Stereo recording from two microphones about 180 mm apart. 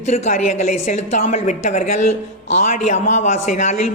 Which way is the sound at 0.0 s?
40° left (ahead or behind).